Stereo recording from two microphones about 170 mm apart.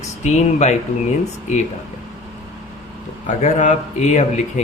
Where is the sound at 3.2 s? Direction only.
45° left (ahead or behind).